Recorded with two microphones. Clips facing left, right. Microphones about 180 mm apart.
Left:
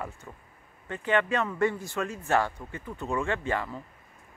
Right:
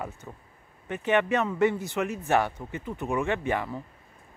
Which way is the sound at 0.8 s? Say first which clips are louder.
Right 2 dB; 20° right (ahead or behind).